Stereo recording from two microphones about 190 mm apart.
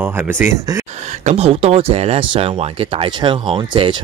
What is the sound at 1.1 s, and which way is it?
Speech, 35° right (ahead or behind).